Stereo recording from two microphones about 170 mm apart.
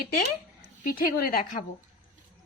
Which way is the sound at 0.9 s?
60° left (ahead or behind).